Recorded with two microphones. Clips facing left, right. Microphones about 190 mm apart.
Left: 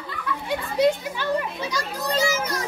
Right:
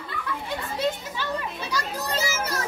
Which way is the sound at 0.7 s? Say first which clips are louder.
Left 8 dB; 15° left (ahead or behind).